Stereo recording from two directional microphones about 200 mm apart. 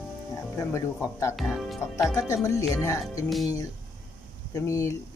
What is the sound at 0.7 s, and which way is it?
Speech, 15° left (ahead or behind).